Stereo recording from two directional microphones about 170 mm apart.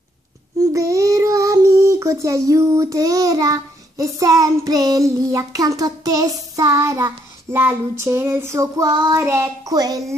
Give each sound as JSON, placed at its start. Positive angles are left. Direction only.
{"t": 0.7, "sound": "child singing", "side_deg": -20}